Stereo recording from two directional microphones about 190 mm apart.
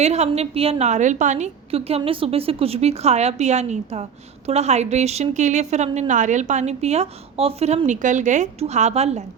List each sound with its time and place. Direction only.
0.0 s a woman's voice: 35° right (ahead or behind)